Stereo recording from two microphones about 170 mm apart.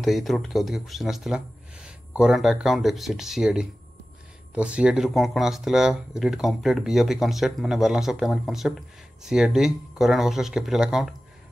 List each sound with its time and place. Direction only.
0.0 s speech: centre (ahead or behind)